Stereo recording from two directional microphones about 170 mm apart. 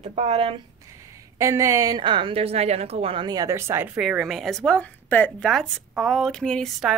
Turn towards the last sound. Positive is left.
turn(degrees=0)  # may be behind; listen again after turning